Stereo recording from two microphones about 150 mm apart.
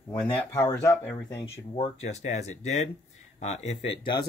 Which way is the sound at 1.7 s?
40° left (ahead or behind).